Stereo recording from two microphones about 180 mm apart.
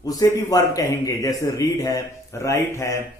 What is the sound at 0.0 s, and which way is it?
Speech, 20° left (ahead or behind).